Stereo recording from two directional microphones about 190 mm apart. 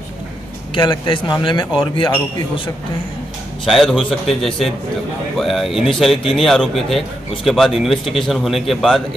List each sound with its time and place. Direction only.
0.7 s a man's voice: 25° left (ahead or behind)
3.6 s a man's voice: centre (ahead or behind)